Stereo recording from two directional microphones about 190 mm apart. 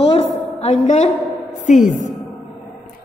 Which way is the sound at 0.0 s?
30° left (ahead or behind).